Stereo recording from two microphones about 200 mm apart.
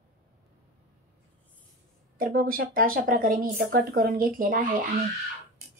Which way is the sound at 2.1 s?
45° right (ahead or behind).